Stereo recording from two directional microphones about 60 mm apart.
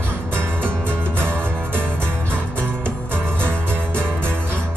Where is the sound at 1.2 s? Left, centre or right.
Right.